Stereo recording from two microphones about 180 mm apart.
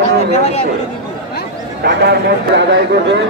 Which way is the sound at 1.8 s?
65° right (ahead or behind).